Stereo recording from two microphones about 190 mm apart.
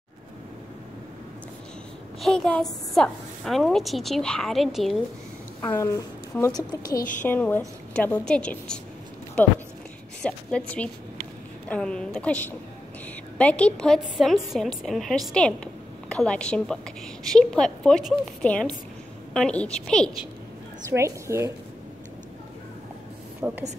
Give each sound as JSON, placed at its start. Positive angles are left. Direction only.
{"t": 2.2, "sound": "a woman's voice", "side_deg": 5}
{"t": 5.7, "sound": "a woman's voice", "side_deg": 20}
{"t": 10.2, "sound": "a woman's voice", "side_deg": 5}
{"t": 20.9, "sound": "a woman's voice", "side_deg": -15}
{"t": 23.4, "sound": "a woman's voice", "side_deg": -10}